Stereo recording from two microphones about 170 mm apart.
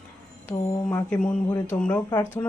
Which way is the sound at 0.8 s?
10° left (ahead or behind).